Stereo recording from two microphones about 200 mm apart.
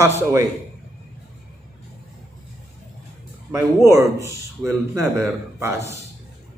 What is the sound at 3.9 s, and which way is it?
A man's voice, 15° right (ahead or behind).